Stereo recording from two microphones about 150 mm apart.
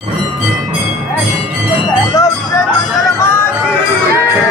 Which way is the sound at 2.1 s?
20° left (ahead or behind).